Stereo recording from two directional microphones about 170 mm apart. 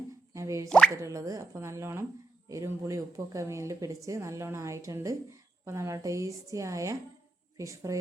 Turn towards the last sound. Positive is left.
turn(degrees=-20)  # may be behind; listen again after turning